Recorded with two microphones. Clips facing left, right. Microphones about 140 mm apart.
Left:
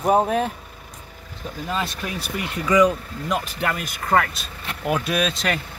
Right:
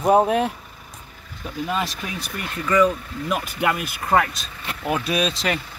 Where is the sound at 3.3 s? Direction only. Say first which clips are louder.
Right 2 dB; 10° right (ahead or behind).